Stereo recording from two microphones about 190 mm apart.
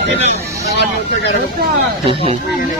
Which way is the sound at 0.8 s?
65° left (ahead or behind).